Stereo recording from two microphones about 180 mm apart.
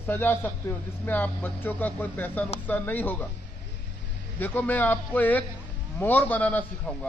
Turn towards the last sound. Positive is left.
turn(degrees=10)  # may be behind; listen again after turning